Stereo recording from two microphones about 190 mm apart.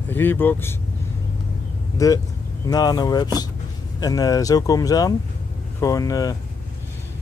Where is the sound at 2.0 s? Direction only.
15° left (ahead or behind).